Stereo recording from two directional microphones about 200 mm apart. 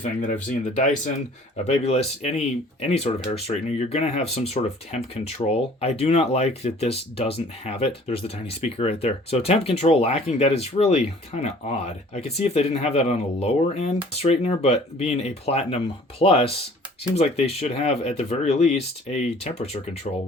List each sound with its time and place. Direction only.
0.0 s speech: 40° left (ahead or behind)